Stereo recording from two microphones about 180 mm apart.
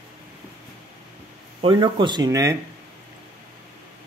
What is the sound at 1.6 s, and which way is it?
Speech, 25° right (ahead or behind).